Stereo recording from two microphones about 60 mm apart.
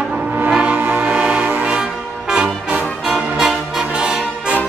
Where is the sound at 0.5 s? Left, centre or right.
Right.